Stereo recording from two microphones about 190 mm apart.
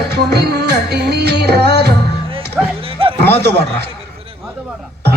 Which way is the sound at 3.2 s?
60° right (ahead or behind).